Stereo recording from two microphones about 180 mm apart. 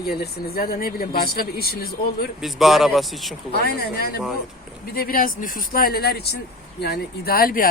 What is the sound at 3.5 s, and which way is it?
Speech, 60° left (ahead or behind).